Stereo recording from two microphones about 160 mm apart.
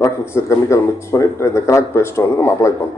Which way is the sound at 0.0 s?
15° left (ahead or behind).